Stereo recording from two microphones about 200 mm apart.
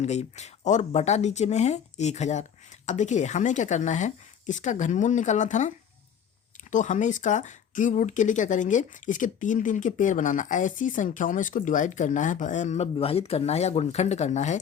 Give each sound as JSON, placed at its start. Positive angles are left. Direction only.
{"t": 0.0, "sound": "speech", "side_deg": 35}